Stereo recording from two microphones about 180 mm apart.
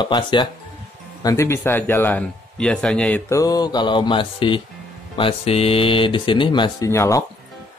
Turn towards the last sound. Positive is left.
turn(degrees=20)  # may be behind; listen again after turning